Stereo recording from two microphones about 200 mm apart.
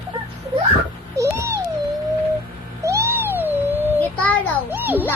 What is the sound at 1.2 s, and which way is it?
Cat, 15° right (ahead or behind).